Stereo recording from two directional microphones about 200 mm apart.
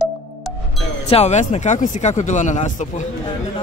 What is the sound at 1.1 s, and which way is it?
Speech, 35° left (ahead or behind).